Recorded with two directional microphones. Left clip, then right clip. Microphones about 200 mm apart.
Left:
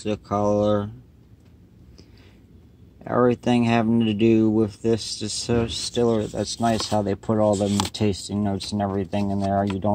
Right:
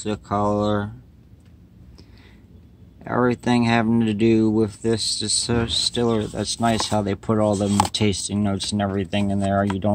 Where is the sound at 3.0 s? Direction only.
5° left (ahead or behind).